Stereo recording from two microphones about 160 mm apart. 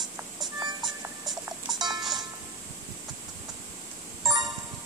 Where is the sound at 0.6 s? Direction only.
25° right (ahead or behind).